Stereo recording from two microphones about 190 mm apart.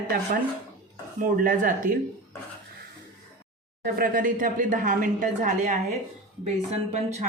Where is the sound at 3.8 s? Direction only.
50° right (ahead or behind).